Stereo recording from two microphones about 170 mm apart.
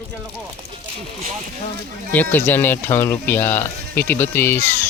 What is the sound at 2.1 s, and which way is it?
Speech, 10° left (ahead or behind).